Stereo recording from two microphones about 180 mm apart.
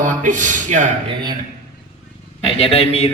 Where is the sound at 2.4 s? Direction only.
35° left (ahead or behind).